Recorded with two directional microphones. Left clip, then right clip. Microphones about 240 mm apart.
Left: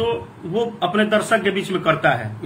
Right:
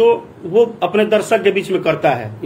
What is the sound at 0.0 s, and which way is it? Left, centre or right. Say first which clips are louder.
Speech: right 9 dB; centre.